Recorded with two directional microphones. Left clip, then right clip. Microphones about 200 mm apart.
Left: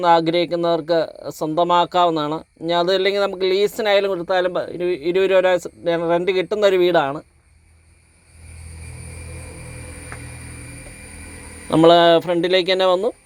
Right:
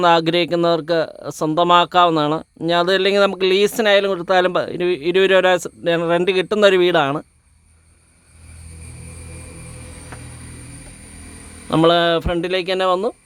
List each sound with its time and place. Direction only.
0.0 s speech: 25° right (ahead or behind)
11.7 s speech: 10° right (ahead or behind)